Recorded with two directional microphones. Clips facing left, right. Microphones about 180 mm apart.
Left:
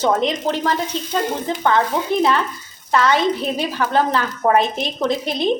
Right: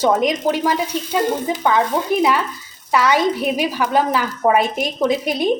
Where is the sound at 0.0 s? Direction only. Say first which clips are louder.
Right 2 dB; 10° right (ahead or behind).